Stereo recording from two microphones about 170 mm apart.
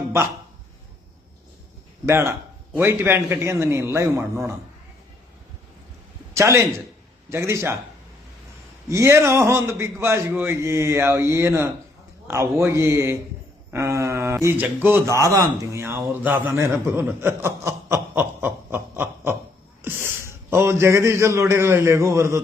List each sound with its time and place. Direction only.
2.0 s a man's voice: 15° right (ahead or behind)
6.3 s a man's voice: 15° right (ahead or behind)
8.9 s a man's voice: 15° right (ahead or behind)